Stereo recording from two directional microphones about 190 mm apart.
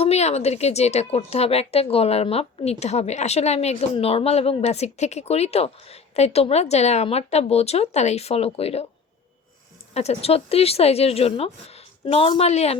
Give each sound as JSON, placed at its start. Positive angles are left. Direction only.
{"t": 0.0, "sound": "a woman's voice", "side_deg": 35}
{"t": 9.9, "sound": "a woman's voice", "side_deg": 35}